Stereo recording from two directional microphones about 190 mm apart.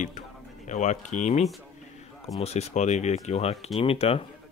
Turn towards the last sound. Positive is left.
turn(degrees=30)  # may be behind; listen again after turning